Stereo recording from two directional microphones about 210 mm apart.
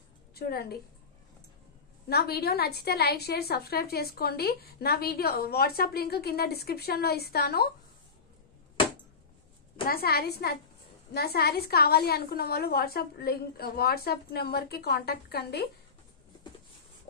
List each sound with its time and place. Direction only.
0.3 s a woman's voice: 50° left (ahead or behind)
2.0 s a woman's voice: 50° left (ahead or behind)
9.8 s a woman's voice: 45° left (ahead or behind)